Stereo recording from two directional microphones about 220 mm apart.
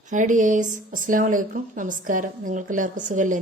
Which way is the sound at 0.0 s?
35° right (ahead or behind).